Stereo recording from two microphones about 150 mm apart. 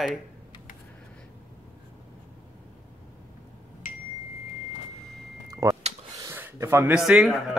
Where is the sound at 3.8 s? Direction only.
65° left (ahead or behind).